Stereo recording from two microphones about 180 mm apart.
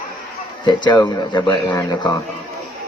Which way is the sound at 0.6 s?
25° left (ahead or behind).